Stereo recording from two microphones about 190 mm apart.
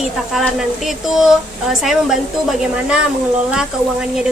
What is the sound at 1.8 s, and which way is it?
Speech, centre (ahead or behind).